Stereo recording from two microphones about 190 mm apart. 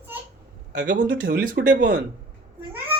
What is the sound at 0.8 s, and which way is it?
Speech, 65° right (ahead or behind).